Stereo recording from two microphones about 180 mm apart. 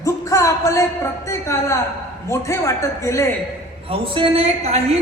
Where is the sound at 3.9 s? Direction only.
30° right (ahead or behind).